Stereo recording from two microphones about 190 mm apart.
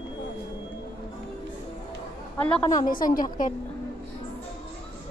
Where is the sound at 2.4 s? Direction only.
5° left (ahead or behind).